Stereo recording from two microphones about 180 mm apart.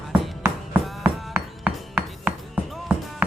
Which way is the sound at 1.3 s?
10° right (ahead or behind).